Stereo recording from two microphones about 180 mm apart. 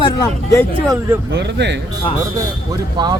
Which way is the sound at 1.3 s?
75° right (ahead or behind).